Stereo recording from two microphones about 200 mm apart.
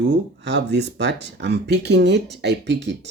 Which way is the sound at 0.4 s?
55° right (ahead or behind).